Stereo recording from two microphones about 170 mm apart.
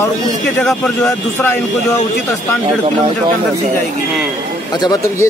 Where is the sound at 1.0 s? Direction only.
20° left (ahead or behind).